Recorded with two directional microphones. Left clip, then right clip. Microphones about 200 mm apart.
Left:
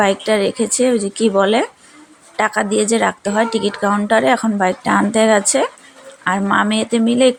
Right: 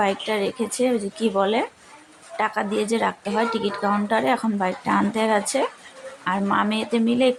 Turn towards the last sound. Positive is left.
turn(degrees=25)  # may be behind; listen again after turning